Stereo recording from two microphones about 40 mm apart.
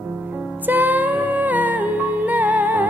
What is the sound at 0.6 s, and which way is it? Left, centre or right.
Music, right.